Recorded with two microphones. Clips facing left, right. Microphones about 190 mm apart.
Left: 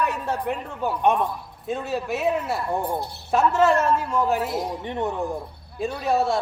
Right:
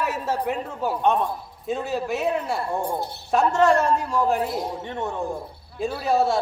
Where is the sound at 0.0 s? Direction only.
5° right (ahead or behind).